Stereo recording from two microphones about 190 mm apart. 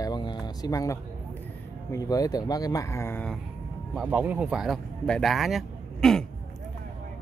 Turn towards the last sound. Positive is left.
turn(degrees=0)  # may be behind; listen again after turning